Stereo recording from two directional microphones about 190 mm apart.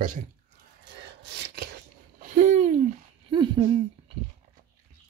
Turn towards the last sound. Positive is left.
turn(degrees=-25)  # may be behind; listen again after turning